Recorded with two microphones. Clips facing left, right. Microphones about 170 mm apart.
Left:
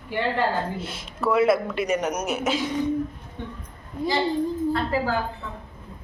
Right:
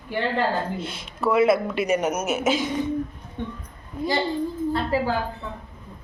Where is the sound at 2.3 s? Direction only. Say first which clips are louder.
Right 4 dB; 25° right (ahead or behind).